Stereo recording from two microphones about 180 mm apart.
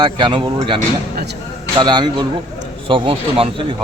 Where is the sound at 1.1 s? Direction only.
65° right (ahead or behind).